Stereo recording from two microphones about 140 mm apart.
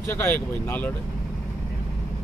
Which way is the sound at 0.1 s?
15° left (ahead or behind).